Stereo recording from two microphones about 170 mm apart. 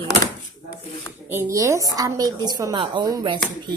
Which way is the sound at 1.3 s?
20° right (ahead or behind).